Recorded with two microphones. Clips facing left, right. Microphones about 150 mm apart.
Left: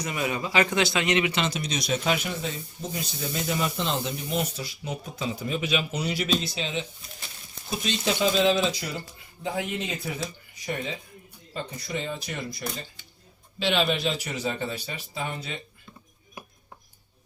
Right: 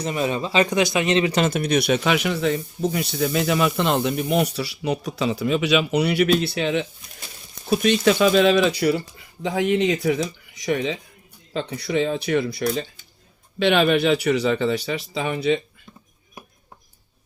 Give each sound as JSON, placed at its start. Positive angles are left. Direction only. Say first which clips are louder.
{"t": 0.0, "sound": "a man's voice", "louder": "right 5 dB", "side_deg": -30}
{"t": 1.3, "sound": "speech", "louder": "right 8 dB", "side_deg": -50}
{"t": 11.5, "sound": "speech", "louder": "right 9 dB", "side_deg": -70}